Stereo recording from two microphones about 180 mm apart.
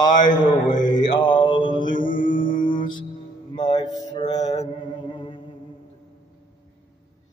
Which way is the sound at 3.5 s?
25° left (ahead or behind).